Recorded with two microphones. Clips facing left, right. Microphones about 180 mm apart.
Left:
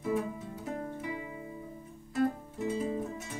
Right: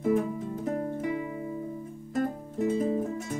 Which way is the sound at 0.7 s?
45° right (ahead or behind).